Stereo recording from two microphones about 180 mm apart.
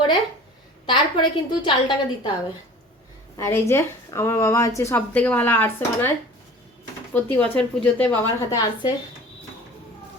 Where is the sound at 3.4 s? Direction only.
15° left (ahead or behind).